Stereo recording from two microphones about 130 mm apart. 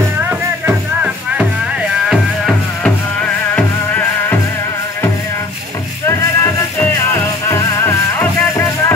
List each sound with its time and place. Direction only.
0.3 s music: 10° right (ahead or behind)
2.0 s music: 5° left (ahead or behind)
6.0 s music: 20° left (ahead or behind)